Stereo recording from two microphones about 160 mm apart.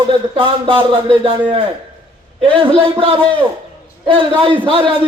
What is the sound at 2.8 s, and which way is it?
Speech, 30° right (ahead or behind).